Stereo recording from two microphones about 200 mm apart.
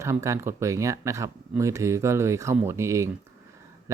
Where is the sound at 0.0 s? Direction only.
15° right (ahead or behind).